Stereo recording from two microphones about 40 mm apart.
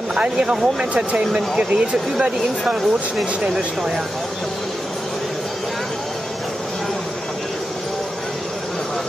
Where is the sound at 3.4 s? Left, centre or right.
Centre.